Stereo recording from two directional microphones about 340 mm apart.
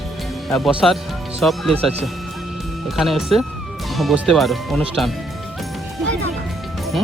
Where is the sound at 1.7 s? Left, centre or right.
Centre.